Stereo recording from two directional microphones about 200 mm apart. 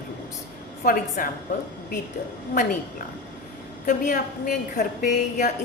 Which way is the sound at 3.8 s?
40° left (ahead or behind).